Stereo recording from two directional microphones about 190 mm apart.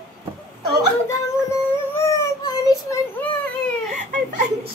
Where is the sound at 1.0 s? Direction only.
15° left (ahead or behind).